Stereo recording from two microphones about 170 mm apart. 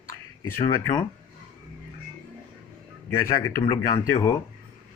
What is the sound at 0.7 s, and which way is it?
Speech, 20° left (ahead or behind).